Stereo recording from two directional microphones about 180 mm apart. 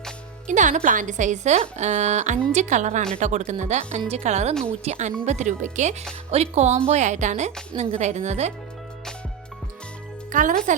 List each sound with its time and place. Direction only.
0.4 s speech: 45° right (ahead or behind)
10.3 s speech: 45° right (ahead or behind)